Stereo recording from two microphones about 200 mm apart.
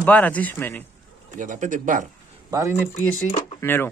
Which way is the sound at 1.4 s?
40° right (ahead or behind).